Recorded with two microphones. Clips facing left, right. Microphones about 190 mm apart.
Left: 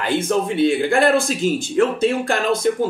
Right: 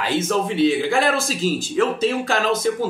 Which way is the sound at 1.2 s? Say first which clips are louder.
Left 2 dB; 55° left (ahead or behind).